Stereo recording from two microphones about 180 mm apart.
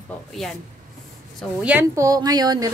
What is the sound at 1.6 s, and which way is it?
A woman's voice, 10° right (ahead or behind).